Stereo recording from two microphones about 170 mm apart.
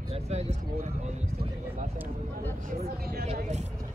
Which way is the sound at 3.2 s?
40° right (ahead or behind).